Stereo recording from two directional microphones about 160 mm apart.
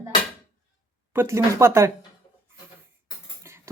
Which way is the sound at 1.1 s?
15° right (ahead or behind).